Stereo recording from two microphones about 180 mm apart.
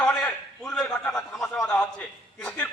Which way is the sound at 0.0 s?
5° left (ahead or behind).